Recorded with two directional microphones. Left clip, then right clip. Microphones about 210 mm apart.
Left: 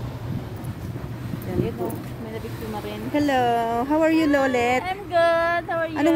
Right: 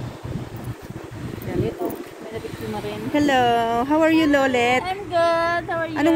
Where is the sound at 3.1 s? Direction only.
5° left (ahead or behind).